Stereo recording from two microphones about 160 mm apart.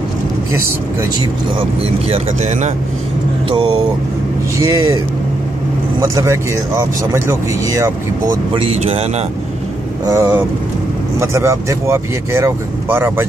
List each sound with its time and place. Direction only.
1.6 s speech: 40° right (ahead or behind)
4.6 s speech: 20° right (ahead or behind)
5.9 s speech: 20° right (ahead or behind)
8.5 s speech: 40° right (ahead or behind)
10.0 s speech: 15° right (ahead or behind)